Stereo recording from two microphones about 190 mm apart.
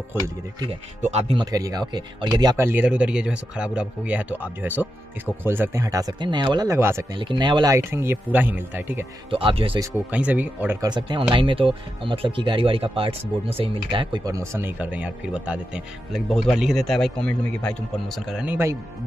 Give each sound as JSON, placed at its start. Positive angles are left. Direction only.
{"t": 1.0, "sound": "speech", "side_deg": -35}
{"t": 1.4, "sound": "speech", "side_deg": -20}
{"t": 7.2, "sound": "speech", "side_deg": -25}
{"t": 9.3, "sound": "speech", "side_deg": -30}
{"t": 9.8, "sound": "speech", "side_deg": -10}
{"t": 10.9, "sound": "speech", "side_deg": -25}